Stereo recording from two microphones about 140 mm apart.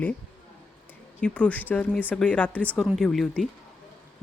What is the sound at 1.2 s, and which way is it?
Speech, 10° left (ahead or behind).